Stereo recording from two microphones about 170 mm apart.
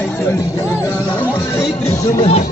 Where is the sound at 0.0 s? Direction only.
10° left (ahead or behind).